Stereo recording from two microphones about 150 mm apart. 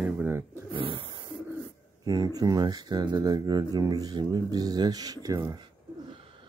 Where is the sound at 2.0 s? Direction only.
25° right (ahead or behind).